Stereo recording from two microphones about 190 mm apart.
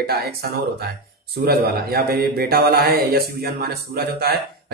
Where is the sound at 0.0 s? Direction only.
55° right (ahead or behind).